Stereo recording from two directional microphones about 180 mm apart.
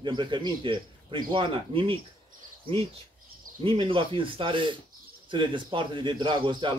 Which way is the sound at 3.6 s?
30° right (ahead or behind).